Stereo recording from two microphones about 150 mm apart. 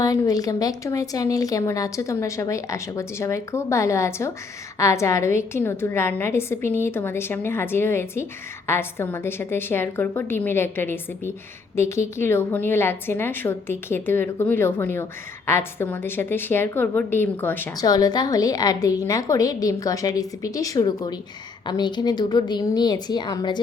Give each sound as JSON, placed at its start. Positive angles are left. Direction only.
{"t": 0.0, "sound": "a woman's voice", "side_deg": 25}
{"t": 17.7, "sound": "speech", "side_deg": 25}